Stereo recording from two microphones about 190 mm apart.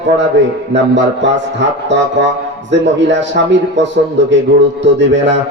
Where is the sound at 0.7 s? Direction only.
70° right (ahead or behind).